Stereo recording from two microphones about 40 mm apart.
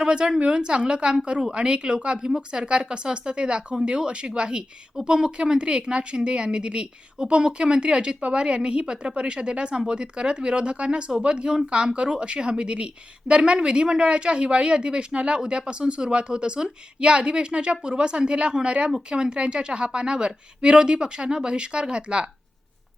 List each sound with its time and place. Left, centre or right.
0.0 s a woman's voice: right